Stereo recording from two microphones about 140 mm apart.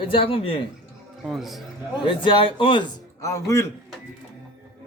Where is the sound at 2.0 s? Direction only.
35° left (ahead or behind).